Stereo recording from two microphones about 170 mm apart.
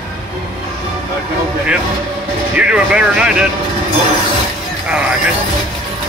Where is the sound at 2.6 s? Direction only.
5° right (ahead or behind).